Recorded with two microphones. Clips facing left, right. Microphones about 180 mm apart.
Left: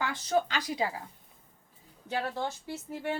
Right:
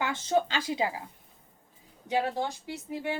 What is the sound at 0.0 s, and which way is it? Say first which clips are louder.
Speech: right 2 dB; 25° right (ahead or behind).